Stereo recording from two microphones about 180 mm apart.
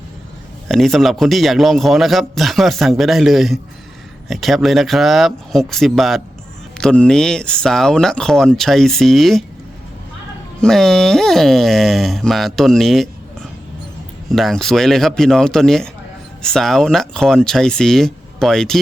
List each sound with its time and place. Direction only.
0.7 s a man's voice: centre (ahead or behind)
10.6 s a man's voice: centre (ahead or behind)
14.3 s a man's voice: centre (ahead or behind)